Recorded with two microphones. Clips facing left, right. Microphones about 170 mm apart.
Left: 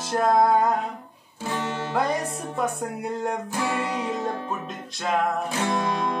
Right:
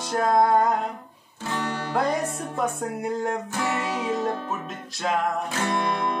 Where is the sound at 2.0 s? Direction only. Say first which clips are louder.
Right 1 dB; centre (ahead or behind).